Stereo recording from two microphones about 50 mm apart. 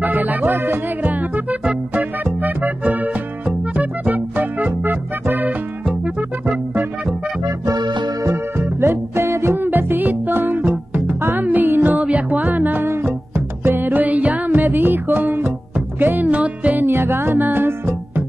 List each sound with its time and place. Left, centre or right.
0.0 s music: right
5.9 s music: right
6.7 s music: right
8.3 s music: right
9.6 s music: right
11.9 s music: right
13.3 s music: right
16.3 s music: right
16.8 s music: right